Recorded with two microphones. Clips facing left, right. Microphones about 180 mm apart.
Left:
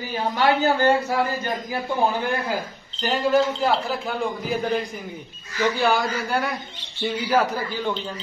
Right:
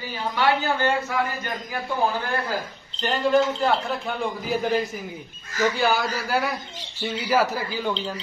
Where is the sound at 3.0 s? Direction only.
Centre (ahead or behind).